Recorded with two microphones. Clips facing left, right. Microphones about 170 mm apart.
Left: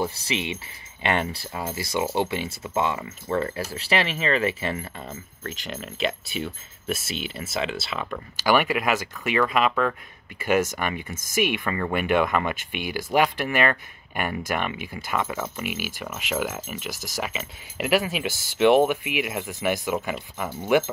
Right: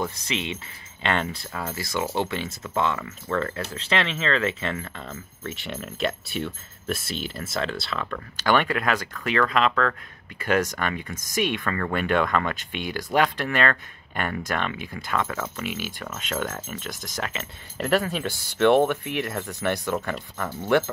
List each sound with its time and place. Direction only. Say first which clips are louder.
0.1 s speech: left 1 dB; 10° left (ahead or behind)
1.5 s speech: left 1 dB; 20° left (ahead or behind)
5.4 s speech: right 1 dB; centre (ahead or behind)
11.1 s speech: even; 25° left (ahead or behind)
11.3 s speech: left 1 dB; 5° left (ahead or behind)
18.3 s speech: right 1 dB; 90° left
18.6 s speech: left 1 dB; 10° left (ahead or behind)